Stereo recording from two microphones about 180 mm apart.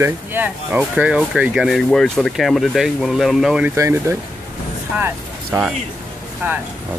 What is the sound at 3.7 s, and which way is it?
Speech, 15° right (ahead or behind).